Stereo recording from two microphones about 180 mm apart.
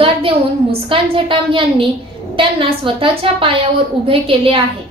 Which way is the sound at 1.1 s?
30° right (ahead or behind).